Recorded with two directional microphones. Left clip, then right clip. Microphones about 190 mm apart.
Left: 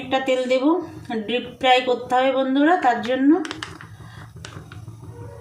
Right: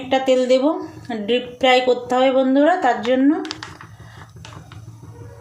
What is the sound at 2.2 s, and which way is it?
Speech, 45° right (ahead or behind).